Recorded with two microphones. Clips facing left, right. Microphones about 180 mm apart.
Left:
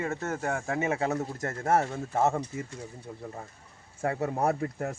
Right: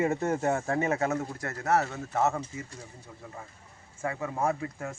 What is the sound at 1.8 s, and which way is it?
Speech, 30° left (ahead or behind).